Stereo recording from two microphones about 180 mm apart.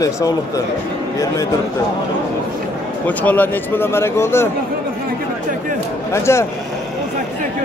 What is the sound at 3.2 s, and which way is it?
Speech, 10° left (ahead or behind).